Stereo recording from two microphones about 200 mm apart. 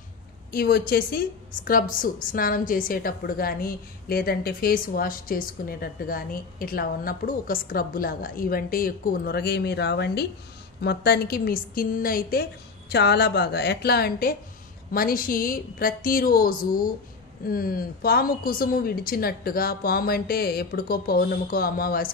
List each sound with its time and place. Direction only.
0.5 s a woman's voice: 50° left (ahead or behind)